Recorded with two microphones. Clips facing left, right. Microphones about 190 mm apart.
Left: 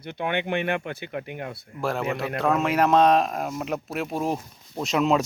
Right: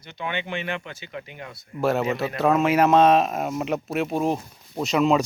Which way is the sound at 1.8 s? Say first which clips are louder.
Right 4 dB; 5° right (ahead or behind).